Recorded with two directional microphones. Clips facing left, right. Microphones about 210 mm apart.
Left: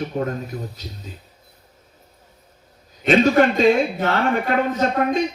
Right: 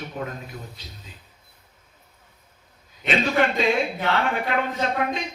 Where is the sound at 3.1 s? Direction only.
45° left (ahead or behind).